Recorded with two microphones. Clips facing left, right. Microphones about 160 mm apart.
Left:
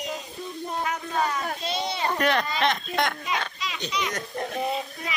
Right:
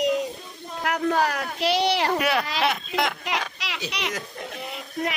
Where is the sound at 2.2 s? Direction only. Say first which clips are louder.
Even; 5° right (ahead or behind).